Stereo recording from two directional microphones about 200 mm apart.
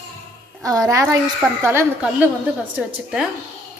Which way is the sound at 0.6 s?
15° right (ahead or behind).